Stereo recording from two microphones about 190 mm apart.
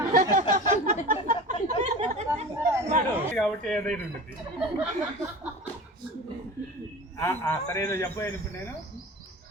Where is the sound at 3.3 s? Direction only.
5° left (ahead or behind).